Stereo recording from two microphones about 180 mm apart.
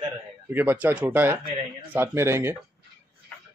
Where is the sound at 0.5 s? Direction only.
10° right (ahead or behind).